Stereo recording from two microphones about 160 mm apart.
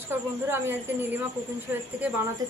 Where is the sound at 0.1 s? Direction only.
15° right (ahead or behind).